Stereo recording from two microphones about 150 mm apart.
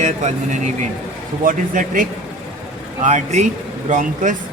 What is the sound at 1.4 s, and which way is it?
Speech, 60° right (ahead or behind).